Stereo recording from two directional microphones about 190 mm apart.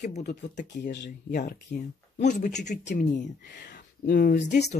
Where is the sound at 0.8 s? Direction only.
65° left (ahead or behind).